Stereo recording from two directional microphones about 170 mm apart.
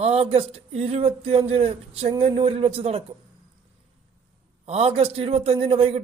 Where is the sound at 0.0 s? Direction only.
35° right (ahead or behind).